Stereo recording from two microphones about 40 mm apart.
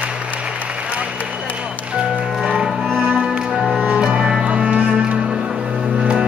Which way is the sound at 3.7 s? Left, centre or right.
Right.